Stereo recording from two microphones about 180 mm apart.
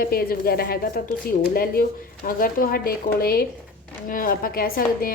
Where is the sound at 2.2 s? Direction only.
55° left (ahead or behind).